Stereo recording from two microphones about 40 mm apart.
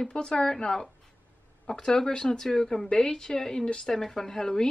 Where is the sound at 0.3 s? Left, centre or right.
Centre.